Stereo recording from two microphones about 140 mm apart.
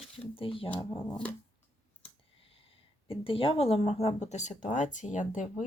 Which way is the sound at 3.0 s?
40° left (ahead or behind).